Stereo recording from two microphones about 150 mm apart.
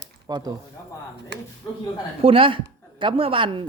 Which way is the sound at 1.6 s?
25° left (ahead or behind).